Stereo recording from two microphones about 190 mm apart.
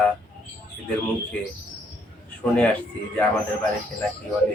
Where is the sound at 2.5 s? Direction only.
10° left (ahead or behind).